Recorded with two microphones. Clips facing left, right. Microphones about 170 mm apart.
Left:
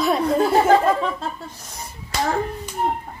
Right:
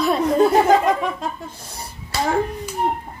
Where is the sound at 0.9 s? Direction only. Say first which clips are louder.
Even; 15° right (ahead or behind).